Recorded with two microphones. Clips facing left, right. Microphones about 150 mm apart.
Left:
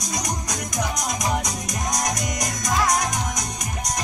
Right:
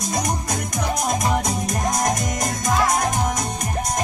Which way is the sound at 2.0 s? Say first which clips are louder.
Right 4 dB; 55° right (ahead or behind).